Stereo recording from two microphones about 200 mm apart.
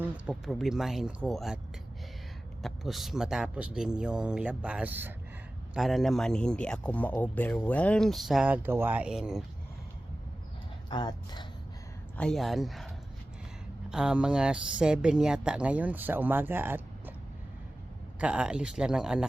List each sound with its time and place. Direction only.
0.1 s a man's voice: 5° right (ahead or behind)
2.6 s a man's voice: centre (ahead or behind)
10.8 s speech: 20° left (ahead or behind)
12.1 s a man's voice: 5° left (ahead or behind)
13.9 s a man's voice: 5° right (ahead or behind)
18.2 s a man's voice: 5° right (ahead or behind)